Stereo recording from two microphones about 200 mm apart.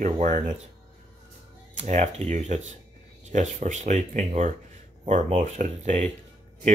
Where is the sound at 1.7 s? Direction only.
35° right (ahead or behind).